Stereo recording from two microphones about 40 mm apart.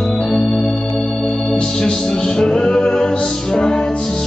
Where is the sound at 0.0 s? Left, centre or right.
Centre.